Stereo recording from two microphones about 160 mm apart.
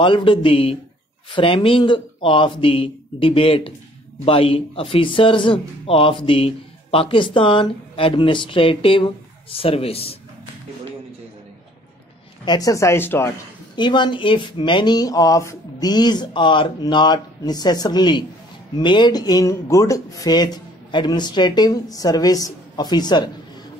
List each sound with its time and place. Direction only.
0.0 s a man's voice: 30° left (ahead or behind)
12.4 s speech: 20° left (ahead or behind)
13.7 s speech: 30° left (ahead or behind)